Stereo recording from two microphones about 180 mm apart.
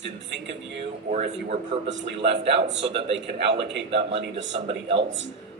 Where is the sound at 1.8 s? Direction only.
75° right (ahead or behind).